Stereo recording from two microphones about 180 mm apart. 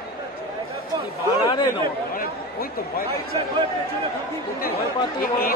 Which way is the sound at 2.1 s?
55° left (ahead or behind).